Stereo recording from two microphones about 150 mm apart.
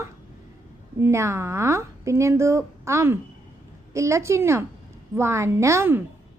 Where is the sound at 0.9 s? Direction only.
20° right (ahead or behind).